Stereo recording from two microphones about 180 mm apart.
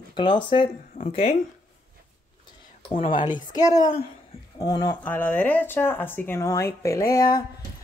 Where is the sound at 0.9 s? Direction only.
40° left (ahead or behind).